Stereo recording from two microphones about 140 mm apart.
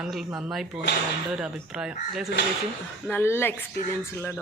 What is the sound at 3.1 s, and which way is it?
Speech, 15° left (ahead or behind).